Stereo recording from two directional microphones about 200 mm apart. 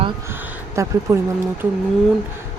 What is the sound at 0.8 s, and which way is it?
Speech, 15° right (ahead or behind).